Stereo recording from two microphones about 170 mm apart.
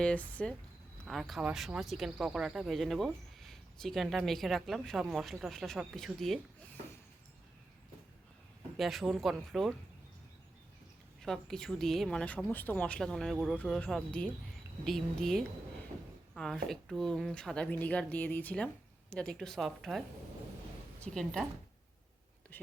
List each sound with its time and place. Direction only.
0.0 s speech: 10° left (ahead or behind)
8.8 s speech: centre (ahead or behind)
11.2 s speech: centre (ahead or behind)
22.5 s speech: 10° left (ahead or behind)